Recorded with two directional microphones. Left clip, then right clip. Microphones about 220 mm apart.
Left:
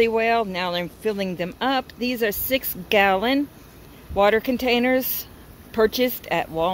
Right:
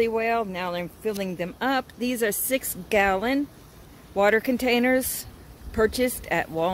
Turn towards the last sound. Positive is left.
turn(degrees=-10)  # may be behind; listen again after turning